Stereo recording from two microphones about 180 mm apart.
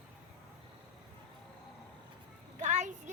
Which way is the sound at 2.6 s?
40° right (ahead or behind).